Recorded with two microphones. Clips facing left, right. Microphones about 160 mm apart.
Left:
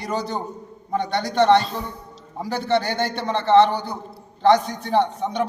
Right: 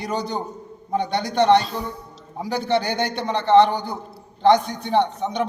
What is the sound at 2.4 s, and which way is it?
A man's voice, 15° right (ahead or behind).